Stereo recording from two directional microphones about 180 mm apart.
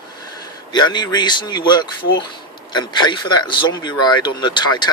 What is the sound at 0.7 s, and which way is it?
Speech, 25° left (ahead or behind).